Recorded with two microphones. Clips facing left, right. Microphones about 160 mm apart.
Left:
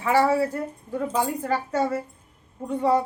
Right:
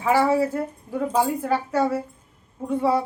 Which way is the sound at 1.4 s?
Centre (ahead or behind).